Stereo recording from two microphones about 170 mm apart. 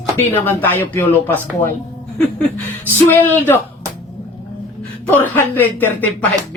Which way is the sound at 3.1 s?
10° left (ahead or behind).